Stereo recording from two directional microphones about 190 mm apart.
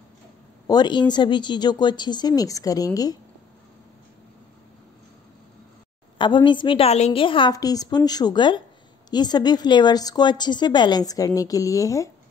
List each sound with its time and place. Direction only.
0.7 s speech: 20° left (ahead or behind)
6.1 s speech: 25° left (ahead or behind)